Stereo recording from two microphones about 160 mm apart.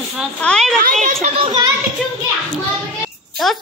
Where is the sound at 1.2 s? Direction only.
35° right (ahead or behind).